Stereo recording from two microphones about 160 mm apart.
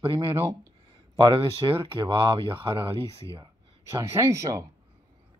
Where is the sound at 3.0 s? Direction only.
20° left (ahead or behind).